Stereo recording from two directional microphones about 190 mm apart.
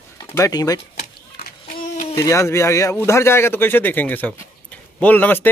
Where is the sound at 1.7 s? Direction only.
45° left (ahead or behind).